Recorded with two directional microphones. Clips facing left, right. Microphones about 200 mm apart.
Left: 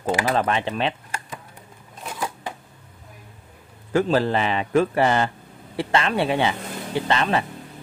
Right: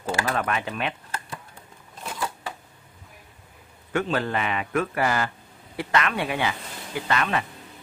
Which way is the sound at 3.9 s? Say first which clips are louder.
Left 6 dB; 30° left (ahead or behind).